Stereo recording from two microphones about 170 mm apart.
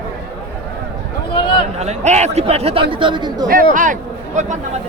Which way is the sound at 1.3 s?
30° left (ahead or behind).